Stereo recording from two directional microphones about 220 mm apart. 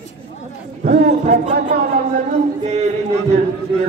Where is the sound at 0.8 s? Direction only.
40° right (ahead or behind).